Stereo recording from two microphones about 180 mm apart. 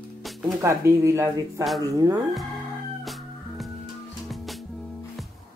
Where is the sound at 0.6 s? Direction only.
15° right (ahead or behind).